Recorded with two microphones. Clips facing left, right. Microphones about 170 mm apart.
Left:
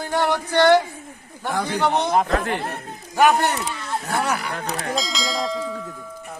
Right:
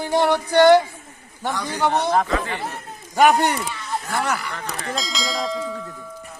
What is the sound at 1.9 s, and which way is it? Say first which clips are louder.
Speech: right 1 dB; 15° left (ahead or behind).